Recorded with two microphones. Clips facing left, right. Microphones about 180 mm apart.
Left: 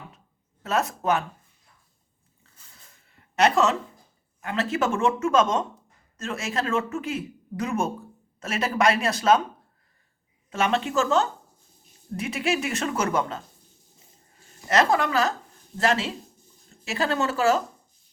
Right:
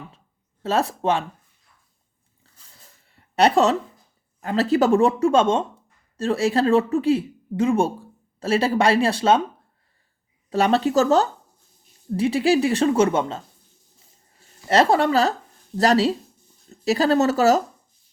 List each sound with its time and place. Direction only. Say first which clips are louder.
0.6 s speech: right 4 dB; 30° right (ahead or behind)
3.3 s speech: right 4 dB; 35° right (ahead or behind)
10.5 s speech: right 6 dB; 35° right (ahead or behind)
14.7 s speech: right 4 dB; 30° right (ahead or behind)